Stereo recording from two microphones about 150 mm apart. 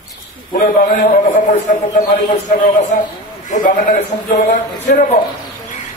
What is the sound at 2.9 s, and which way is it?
Speech, 70° left (ahead or behind).